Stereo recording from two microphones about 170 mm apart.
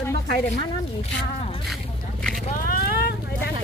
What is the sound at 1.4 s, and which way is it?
Speech, 35° left (ahead or behind).